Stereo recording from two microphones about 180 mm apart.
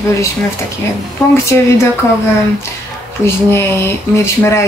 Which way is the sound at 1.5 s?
10° left (ahead or behind).